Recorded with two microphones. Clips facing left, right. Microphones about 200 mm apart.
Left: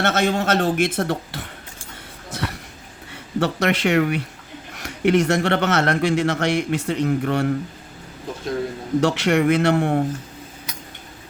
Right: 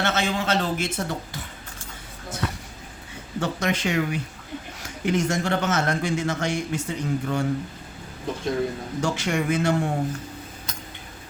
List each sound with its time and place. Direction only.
0.0 s speech: 55° left (ahead or behind)
2.3 s a sound: 65° left (ahead or behind)
3.1 s speech: 65° left (ahead or behind)
9.0 s speech: 70° left (ahead or behind)